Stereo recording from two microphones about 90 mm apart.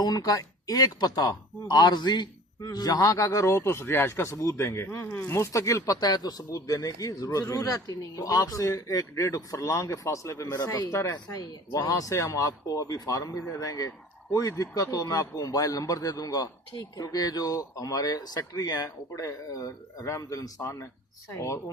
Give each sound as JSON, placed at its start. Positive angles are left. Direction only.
{"t": 0.0, "sound": "speech", "side_deg": 45}